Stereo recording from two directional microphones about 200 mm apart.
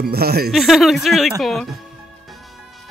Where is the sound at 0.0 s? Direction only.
50° right (ahead or behind).